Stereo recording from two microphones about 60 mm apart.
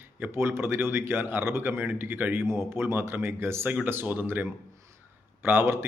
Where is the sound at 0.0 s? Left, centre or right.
Right.